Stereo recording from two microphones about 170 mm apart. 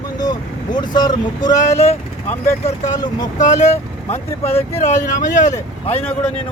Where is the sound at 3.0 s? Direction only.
25° left (ahead or behind).